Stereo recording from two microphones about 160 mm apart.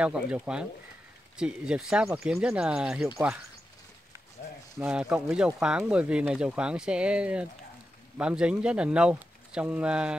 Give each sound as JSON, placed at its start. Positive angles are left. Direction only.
{"t": 0.0, "sound": "speech", "side_deg": -5}
{"t": 4.8, "sound": "speech", "side_deg": -5}